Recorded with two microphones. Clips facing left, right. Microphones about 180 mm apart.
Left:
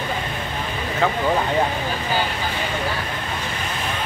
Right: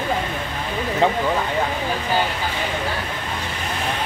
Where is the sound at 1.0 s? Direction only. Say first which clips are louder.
Right 2 dB; 30° right (ahead or behind).